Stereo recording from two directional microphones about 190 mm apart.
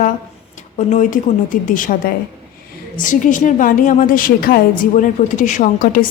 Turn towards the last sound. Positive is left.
turn(degrees=45)  # may be behind; listen again after turning